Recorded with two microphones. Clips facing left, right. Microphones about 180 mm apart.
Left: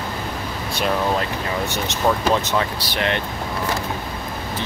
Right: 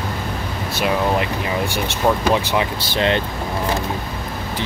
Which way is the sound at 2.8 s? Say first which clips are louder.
Right 4 dB; 25° right (ahead or behind).